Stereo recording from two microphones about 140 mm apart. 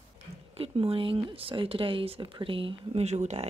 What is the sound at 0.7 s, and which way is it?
Speech, 40° right (ahead or behind).